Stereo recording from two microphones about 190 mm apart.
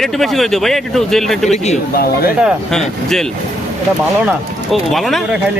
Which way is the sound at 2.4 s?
Centre (ahead or behind).